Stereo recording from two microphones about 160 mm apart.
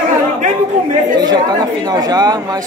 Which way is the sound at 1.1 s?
25° right (ahead or behind).